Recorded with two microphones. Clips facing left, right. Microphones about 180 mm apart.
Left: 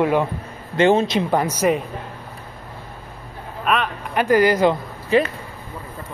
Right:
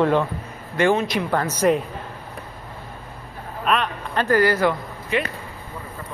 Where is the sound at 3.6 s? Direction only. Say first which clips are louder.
Left 1 dB; centre (ahead or behind).